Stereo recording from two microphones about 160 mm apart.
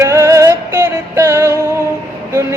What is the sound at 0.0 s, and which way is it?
Music, 20° right (ahead or behind).